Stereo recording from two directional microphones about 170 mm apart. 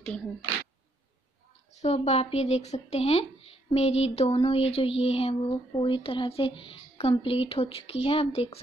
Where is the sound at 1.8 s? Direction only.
40° left (ahead or behind).